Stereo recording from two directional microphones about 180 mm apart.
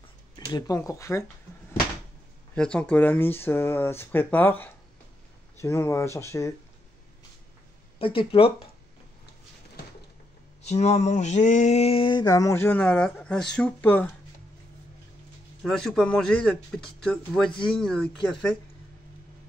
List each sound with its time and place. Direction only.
0.5 s speech: 20° left (ahead or behind)
2.5 s speech: 5° left (ahead or behind)
8.0 s speech: 30° left (ahead or behind)
10.6 s mantra: 35° left (ahead or behind); by 14.1 s 10° left (ahead or behind)
15.6 s speech: 5° left (ahead or behind)